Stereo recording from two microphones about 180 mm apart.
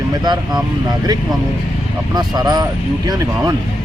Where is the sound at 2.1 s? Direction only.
20° right (ahead or behind).